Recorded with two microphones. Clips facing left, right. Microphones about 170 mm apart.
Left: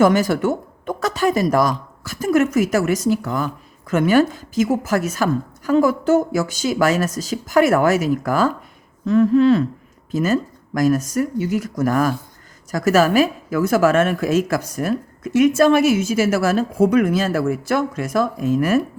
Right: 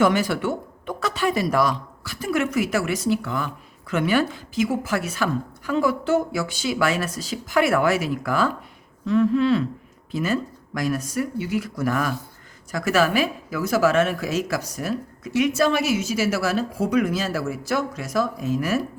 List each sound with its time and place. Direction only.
0.0 s speech: 40° left (ahead or behind)